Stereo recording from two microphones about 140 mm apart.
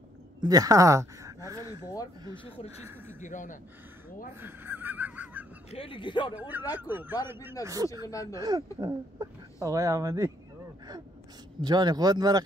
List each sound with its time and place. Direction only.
0.4 s speech: 25° right (ahead or behind)
3.2 s speech: 65° left (ahead or behind)
4.4 s speech: 15° right (ahead or behind)
5.7 s speech: 40° left (ahead or behind)
6.3 s speech: 10° right (ahead or behind)
7.6 s speech: 25° right (ahead or behind)
8.1 s speech: 25° left (ahead or behind)
8.4 s speech: 25° right (ahead or behind)
11.6 s speech: 30° right (ahead or behind)